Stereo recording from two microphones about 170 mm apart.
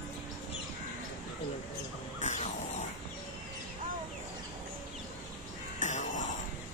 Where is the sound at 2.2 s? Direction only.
45° left (ahead or behind).